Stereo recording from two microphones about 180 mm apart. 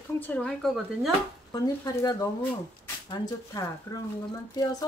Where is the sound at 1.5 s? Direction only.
20° left (ahead or behind).